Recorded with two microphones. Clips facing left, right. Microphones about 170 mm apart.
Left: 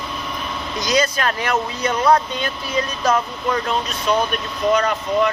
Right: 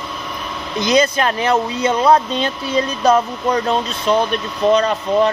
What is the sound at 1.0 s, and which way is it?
Speech, 25° right (ahead or behind).